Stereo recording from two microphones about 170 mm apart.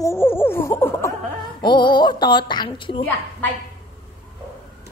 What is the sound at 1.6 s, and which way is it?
Laughter, 25° left (ahead or behind).